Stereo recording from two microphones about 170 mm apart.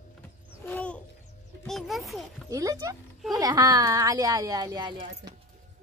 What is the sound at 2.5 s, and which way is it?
Speech, 20° right (ahead or behind).